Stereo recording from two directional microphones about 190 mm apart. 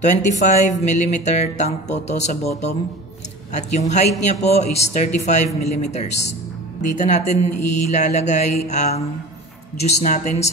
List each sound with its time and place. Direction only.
0.0 s speech: 40° left (ahead or behind)
10.0 s speech: 40° left (ahead or behind)